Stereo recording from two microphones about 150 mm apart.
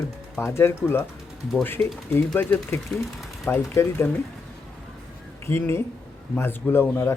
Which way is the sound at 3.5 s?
15° left (ahead or behind).